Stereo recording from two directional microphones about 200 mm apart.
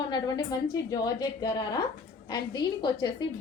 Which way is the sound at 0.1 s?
20° left (ahead or behind).